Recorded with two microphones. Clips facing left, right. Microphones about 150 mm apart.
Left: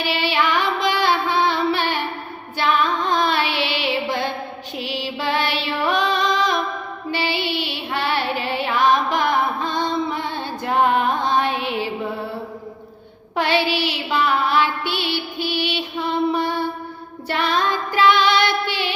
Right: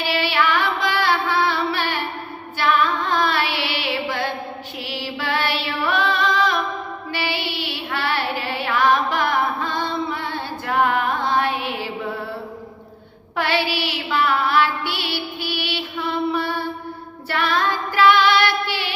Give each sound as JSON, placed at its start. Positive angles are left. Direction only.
{"t": 0.0, "sound": "music", "side_deg": 20}
{"t": 2.6, "sound": "female singing", "side_deg": 20}
{"t": 13.3, "sound": "music", "side_deg": 20}
{"t": 17.2, "sound": "child singing", "side_deg": 20}